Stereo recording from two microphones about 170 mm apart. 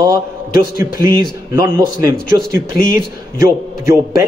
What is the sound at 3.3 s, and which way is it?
Speech, 15° right (ahead or behind).